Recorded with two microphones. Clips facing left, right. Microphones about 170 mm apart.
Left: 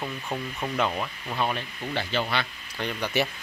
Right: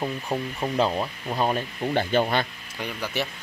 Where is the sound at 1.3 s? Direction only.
40° right (ahead or behind).